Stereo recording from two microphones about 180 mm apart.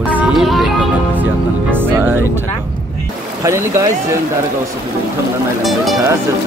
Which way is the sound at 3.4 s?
15° right (ahead or behind).